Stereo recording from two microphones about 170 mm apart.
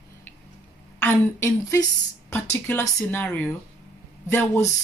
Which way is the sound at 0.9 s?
15° left (ahead or behind).